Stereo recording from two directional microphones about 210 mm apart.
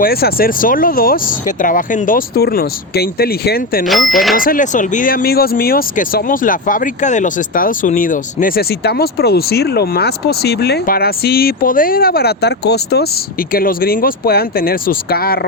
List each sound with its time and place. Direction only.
0.0 s speech: 45° left (ahead or behind)
3.8 s speech: centre (ahead or behind)
4.4 s speech: 40° left (ahead or behind)